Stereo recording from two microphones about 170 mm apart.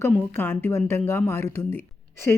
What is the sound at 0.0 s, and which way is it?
Speech, 10° left (ahead or behind).